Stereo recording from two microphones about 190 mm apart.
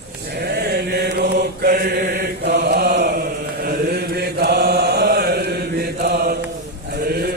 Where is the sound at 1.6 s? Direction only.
50° right (ahead or behind).